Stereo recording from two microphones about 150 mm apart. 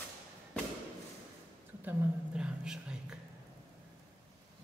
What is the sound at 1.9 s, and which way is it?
Speech, 5° right (ahead or behind).